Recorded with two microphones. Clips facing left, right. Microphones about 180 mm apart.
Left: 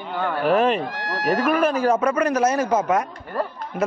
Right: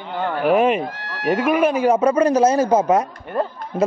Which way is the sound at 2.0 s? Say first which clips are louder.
Right 5 dB; 30° right (ahead or behind).